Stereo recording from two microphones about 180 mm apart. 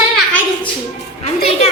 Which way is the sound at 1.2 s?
35° left (ahead or behind).